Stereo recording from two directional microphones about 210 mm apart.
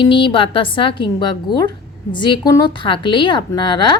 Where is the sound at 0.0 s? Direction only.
25° left (ahead or behind).